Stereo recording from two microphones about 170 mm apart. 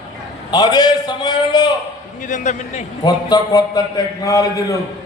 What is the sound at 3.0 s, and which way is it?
A man's voice, 25° left (ahead or behind).